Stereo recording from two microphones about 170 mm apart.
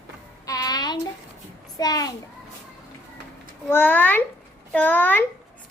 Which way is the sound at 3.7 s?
10° left (ahead or behind).